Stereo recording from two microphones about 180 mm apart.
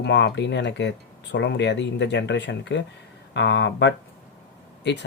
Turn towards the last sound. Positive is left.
turn(degrees=70)  # may be behind; listen again after turning